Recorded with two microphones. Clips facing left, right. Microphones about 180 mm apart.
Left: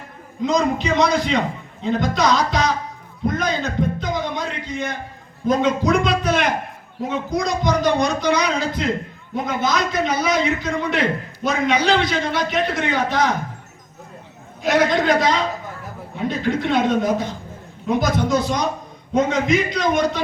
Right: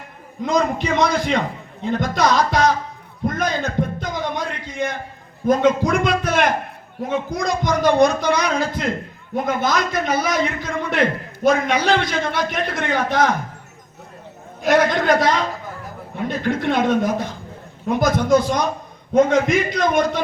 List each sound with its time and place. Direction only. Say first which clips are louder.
0.4 s a man's voice: left 1 dB; 55° right (ahead or behind)
3.2 s a sound: even; 50° right (ahead or behind)
5.5 s a man's voice: right 1 dB; 50° right (ahead or behind)
14.6 s a man's voice: right 1 dB; 50° right (ahead or behind)